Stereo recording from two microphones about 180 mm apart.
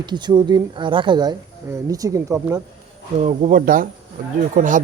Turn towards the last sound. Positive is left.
turn(degrees=-45)  # may be behind; listen again after turning